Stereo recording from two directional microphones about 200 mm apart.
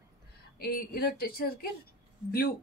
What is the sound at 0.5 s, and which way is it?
A woman's voice, 50° left (ahead or behind).